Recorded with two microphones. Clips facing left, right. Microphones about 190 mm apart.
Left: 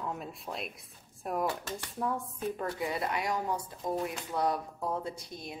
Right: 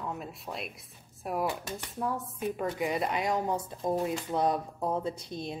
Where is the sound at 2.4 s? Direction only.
15° right (ahead or behind).